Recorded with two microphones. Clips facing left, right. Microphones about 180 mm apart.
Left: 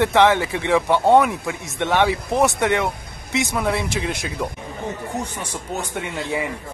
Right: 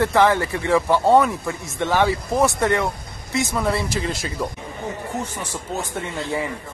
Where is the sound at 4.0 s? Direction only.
5° left (ahead or behind).